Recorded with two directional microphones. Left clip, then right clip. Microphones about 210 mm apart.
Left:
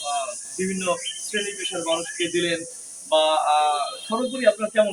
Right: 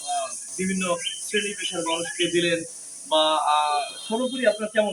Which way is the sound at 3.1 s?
15° right (ahead or behind).